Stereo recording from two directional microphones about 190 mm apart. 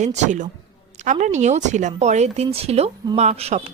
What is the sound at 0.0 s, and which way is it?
A woman's voice, 40° right (ahead or behind).